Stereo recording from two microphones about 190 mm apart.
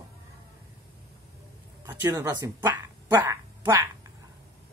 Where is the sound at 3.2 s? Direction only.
10° right (ahead or behind).